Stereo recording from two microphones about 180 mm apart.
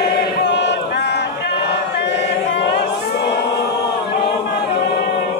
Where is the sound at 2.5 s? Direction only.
75° left (ahead or behind).